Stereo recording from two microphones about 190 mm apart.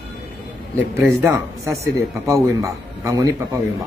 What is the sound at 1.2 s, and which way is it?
Speech, 15° right (ahead or behind).